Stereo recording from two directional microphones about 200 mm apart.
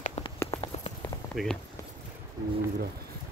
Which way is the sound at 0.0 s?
30° left (ahead or behind).